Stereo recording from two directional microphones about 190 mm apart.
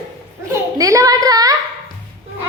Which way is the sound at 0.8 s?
15° right (ahead or behind).